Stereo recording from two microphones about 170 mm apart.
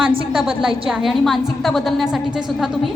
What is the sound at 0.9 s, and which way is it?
A woman's voice, centre (ahead or behind).